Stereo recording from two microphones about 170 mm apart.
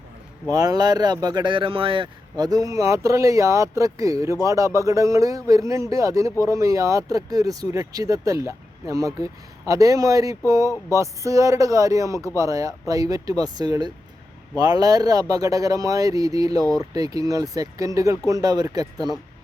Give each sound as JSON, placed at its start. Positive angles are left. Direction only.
{"t": 0.5, "sound": "speech", "side_deg": -20}